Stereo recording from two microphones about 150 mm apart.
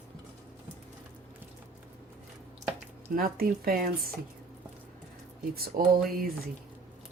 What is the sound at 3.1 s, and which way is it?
Speech, 75° right (ahead or behind).